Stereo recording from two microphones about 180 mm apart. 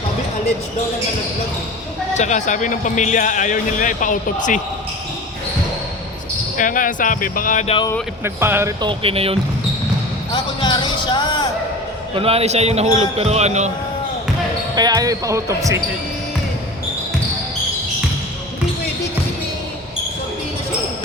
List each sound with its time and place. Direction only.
2.1 s speech: 40° left (ahead or behind)
6.6 s speech: 50° left (ahead or behind)
8.2 s speech: 15° right (ahead or behind)
8.8 s a man's voice: 30° right (ahead or behind)
10.3 s a sound: 25° left (ahead or behind)
12.1 s a man's voice: 30° right (ahead or behind)
14.8 s speech: 20° right (ahead or behind)